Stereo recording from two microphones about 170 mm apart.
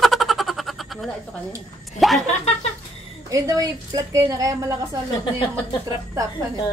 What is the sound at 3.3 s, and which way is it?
A woman's voice, 20° right (ahead or behind).